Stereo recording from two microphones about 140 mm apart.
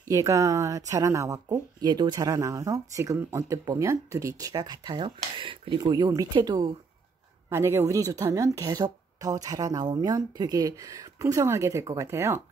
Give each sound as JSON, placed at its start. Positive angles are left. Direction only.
{"t": 0.1, "sound": "a woman's voice", "side_deg": -20}
{"t": 7.4, "sound": "a man's voice", "side_deg": -20}